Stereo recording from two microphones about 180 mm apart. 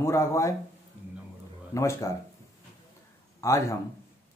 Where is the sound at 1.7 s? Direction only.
15° left (ahead or behind).